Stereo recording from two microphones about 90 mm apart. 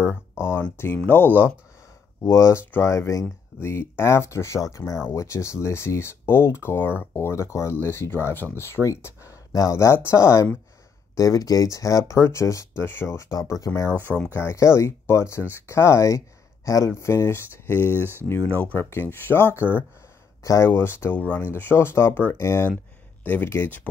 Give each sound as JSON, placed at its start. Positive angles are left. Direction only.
{"t": 0.6, "sound": "speech", "side_deg": 25}
{"t": 13.3, "sound": "speech", "side_deg": 40}
{"t": 13.7, "sound": "speech", "side_deg": 25}